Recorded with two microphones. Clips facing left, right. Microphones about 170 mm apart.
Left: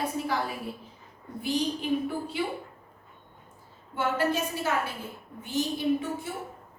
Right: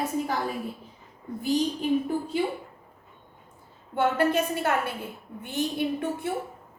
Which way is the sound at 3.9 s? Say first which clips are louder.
Right 4 dB; 55° right (ahead or behind).